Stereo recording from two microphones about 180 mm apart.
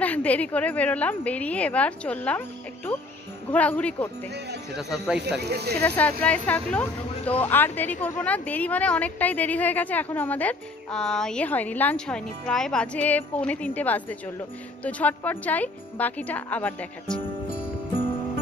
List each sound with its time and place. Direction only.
0.0 s a woman's voice: 10° left (ahead or behind)
3.5 s a woman's voice: 10° left (ahead or behind)
5.4 s speech: 65° right (ahead or behind)
5.8 s a woman's voice: 10° left (ahead or behind)